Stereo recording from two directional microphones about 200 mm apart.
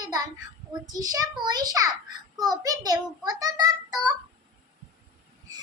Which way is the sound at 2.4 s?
20° right (ahead or behind).